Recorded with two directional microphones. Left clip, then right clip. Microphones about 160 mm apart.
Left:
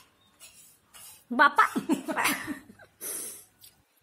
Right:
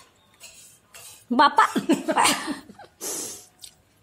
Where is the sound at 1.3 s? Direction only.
20° right (ahead or behind).